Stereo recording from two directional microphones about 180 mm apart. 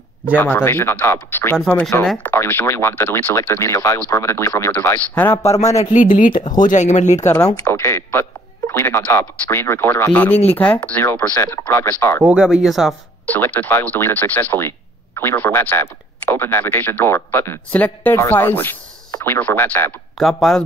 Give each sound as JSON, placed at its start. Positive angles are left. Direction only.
{"t": 0.4, "sound": "speech", "side_deg": 10}
{"t": 5.9, "sound": "speech", "side_deg": 45}
{"t": 6.3, "sound": "speech", "side_deg": 25}
{"t": 6.6, "sound": "speech", "side_deg": 45}
{"t": 7.2, "sound": "speech", "side_deg": 15}
{"t": 12.3, "sound": "speech", "side_deg": -5}
{"t": 13.3, "sound": "speech", "side_deg": 10}
{"t": 20.2, "sound": "speech", "side_deg": 0}